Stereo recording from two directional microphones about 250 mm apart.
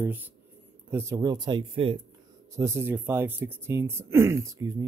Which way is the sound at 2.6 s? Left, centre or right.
Centre.